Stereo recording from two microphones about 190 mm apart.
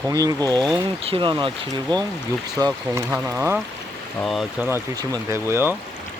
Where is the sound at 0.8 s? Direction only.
30° right (ahead or behind).